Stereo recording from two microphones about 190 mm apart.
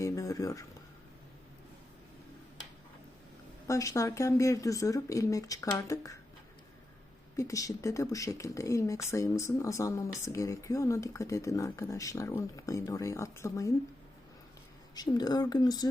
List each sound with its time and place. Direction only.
0.0 s speech: 15° left (ahead or behind)
3.7 s speech: 15° left (ahead or behind)
7.3 s speech: 15° left (ahead or behind)
14.9 s speech: 20° left (ahead or behind)